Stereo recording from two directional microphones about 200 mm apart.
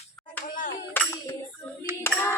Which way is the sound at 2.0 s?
10° left (ahead or behind).